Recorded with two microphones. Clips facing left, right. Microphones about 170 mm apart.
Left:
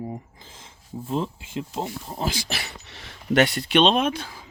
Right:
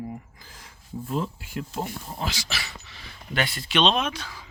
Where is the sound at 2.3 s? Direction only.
55° left (ahead or behind).